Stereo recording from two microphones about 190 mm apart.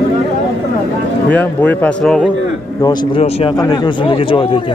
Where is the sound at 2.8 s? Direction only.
20° left (ahead or behind).